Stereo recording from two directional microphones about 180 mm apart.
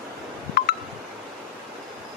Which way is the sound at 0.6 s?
60° left (ahead or behind).